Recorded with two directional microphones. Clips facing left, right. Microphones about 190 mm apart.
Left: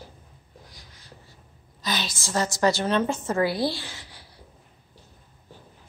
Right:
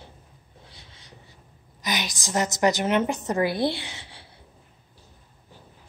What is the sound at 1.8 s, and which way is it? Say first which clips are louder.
A woman's voice: even; 15° right (ahead or behind).